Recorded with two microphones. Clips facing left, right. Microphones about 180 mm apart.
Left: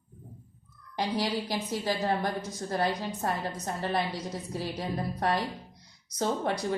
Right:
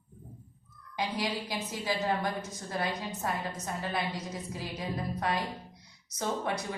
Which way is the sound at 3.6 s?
35° left (ahead or behind).